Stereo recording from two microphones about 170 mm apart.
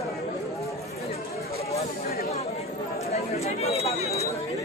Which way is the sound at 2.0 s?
60° left (ahead or behind).